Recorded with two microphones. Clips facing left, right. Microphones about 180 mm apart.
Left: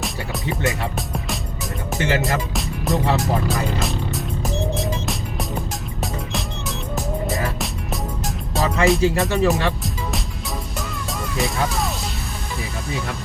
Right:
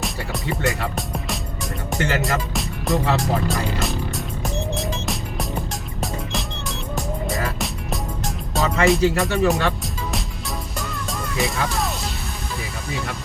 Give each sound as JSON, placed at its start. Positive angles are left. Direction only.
{"t": 0.0, "sound": "music", "side_deg": 0}
{"t": 11.3, "sound": "speech", "side_deg": 0}